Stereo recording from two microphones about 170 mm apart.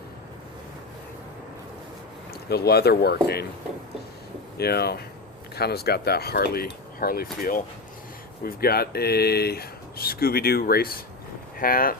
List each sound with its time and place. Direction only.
2.5 s speech: 70° left (ahead or behind)
4.5 s speech: 70° left (ahead or behind)